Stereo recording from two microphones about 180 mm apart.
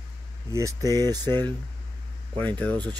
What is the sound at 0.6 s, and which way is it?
Speech, 20° right (ahead or behind).